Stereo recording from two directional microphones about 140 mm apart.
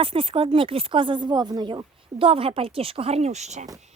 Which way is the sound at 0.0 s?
40° right (ahead or behind).